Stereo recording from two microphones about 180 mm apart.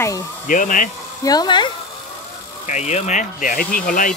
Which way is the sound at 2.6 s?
40° left (ahead or behind).